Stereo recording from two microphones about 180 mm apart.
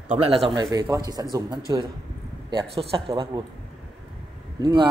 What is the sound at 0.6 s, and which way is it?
A man's voice, 20° right (ahead or behind).